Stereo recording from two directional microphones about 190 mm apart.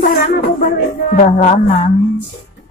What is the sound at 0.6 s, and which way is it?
Music, 50° left (ahead or behind).